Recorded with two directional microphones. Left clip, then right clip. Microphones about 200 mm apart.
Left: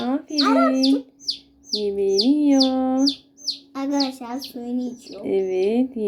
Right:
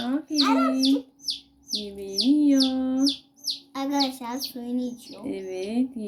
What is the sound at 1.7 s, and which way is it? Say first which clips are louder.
Speech: left 11 dB; 5° left (ahead or behind).